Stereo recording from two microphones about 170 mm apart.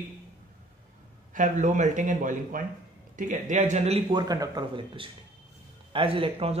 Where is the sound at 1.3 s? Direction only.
50° right (ahead or behind).